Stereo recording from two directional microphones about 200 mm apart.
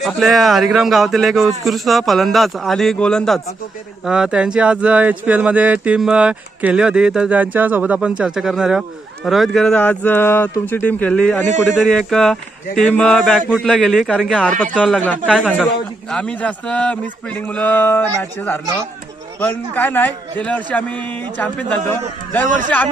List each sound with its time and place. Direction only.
0.0 s a man's voice: centre (ahead or behind)
11.4 s a man's voice: 35° right (ahead or behind)
11.8 s speech: centre (ahead or behind)
15.3 s a man's voice: 5° right (ahead or behind)